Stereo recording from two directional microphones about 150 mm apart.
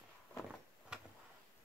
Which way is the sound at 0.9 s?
5° right (ahead or behind).